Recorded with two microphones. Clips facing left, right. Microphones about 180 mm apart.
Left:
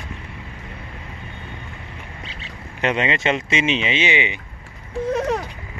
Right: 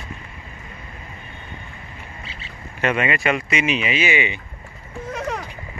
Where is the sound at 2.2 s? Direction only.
Centre (ahead or behind).